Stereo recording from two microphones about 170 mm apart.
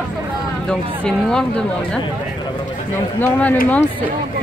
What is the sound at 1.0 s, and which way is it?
Speech, 5° left (ahead or behind).